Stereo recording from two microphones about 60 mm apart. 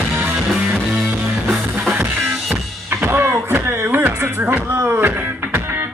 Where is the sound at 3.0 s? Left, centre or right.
Right.